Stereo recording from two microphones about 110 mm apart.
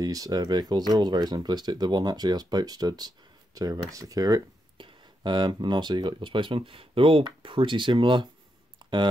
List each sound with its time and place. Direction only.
0.0 s speech: 35° right (ahead or behind)
4.7 s speech: 45° right (ahead or behind)
8.7 s a sound: 45° right (ahead or behind)